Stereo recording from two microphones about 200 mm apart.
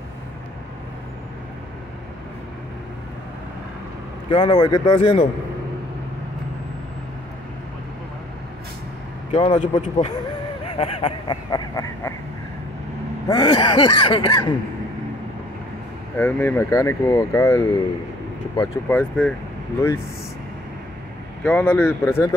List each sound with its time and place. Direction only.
4.3 s speech: 25° left (ahead or behind)
9.3 s speech: 25° left (ahead or behind)
9.6 s a man's voice: 35° left (ahead or behind); by 12.1 s 15° left (ahead or behind)
13.3 s speech: 20° left (ahead or behind)
16.2 s speech: 10° left (ahead or behind)
21.5 s speech: 5° left (ahead or behind)